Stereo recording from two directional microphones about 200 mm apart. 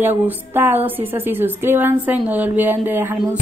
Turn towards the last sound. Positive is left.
turn(degrees=-10)  # may be behind; listen again after turning